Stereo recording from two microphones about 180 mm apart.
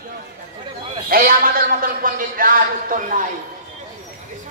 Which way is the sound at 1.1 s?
55° right (ahead or behind).